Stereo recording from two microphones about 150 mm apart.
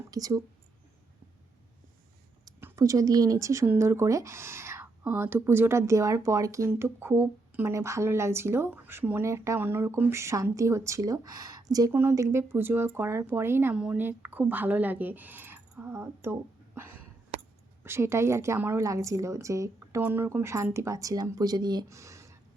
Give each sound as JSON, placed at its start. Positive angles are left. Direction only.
{"t": 0.1, "sound": "a woman's voice", "side_deg": -25}
{"t": 2.4, "sound": "a woman's voice", "side_deg": -15}